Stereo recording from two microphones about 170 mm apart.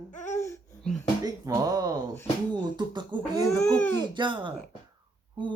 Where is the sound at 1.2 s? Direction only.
20° right (ahead or behind).